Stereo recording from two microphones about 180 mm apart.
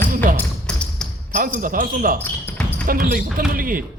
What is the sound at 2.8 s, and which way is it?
Speech, 50° right (ahead or behind).